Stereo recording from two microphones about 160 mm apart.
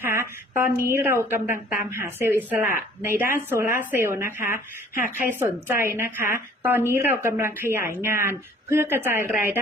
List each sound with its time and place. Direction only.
0.0 s a sound: 15° right (ahead or behind)
2.0 s speech: 15° right (ahead or behind)
4.5 s speech: 60° left (ahead or behind)
5.3 s speech: 15° right (ahead or behind)